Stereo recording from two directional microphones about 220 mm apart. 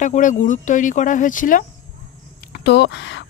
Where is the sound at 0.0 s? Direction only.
35° left (ahead or behind).